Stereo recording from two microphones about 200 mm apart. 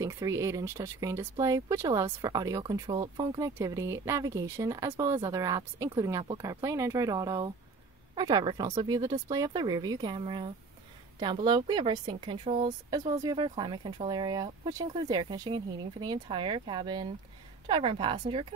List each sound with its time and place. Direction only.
0.0 s speech: 15° right (ahead or behind)